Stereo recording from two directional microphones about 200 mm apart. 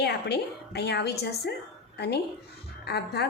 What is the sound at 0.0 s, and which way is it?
A woman's voice, 55° left (ahead or behind).